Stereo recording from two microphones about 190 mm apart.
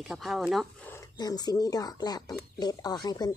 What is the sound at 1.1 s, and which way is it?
Speech, 20° left (ahead or behind).